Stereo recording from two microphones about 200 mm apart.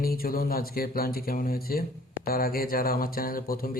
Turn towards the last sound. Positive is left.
turn(degrees=45)  # may be behind; listen again after turning